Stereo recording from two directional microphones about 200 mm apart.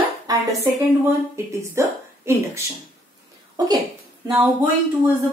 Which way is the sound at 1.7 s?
15° right (ahead or behind).